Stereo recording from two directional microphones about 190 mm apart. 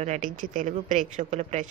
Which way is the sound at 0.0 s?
40° right (ahead or behind).